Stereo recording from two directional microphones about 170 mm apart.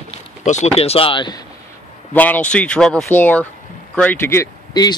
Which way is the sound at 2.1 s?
10° left (ahead or behind).